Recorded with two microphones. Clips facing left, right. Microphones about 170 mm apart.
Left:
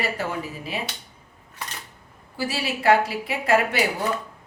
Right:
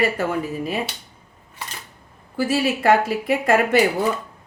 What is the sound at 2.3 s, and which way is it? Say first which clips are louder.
Speech: right 7 dB; 50° right (ahead or behind).